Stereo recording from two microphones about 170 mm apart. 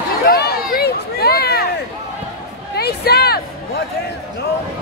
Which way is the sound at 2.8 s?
70° left (ahead or behind).